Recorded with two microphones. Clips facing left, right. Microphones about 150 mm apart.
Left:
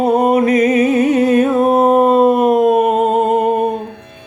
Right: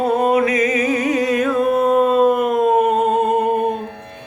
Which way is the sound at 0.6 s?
30° left (ahead or behind).